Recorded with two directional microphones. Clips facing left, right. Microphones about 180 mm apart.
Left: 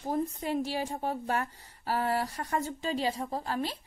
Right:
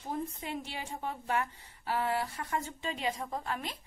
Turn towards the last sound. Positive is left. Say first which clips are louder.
# left 4 dB
turn(degrees=35)  # may be behind; listen again after turning